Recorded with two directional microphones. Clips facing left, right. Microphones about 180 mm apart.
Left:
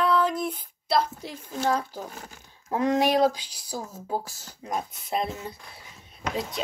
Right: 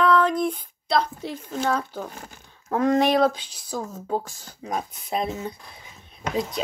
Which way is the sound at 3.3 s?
10° left (ahead or behind).